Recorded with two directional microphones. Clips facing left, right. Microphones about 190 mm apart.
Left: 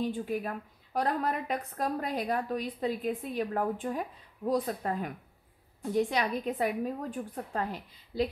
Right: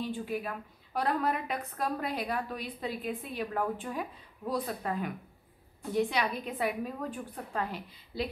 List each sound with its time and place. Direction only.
0.0 s a woman's voice: 45° left (ahead or behind)